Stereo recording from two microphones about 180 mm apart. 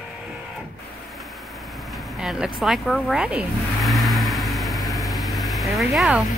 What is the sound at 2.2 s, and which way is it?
Vehicle, 5° right (ahead or behind).